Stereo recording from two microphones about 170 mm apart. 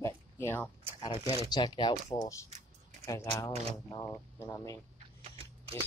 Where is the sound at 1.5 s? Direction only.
25° left (ahead or behind).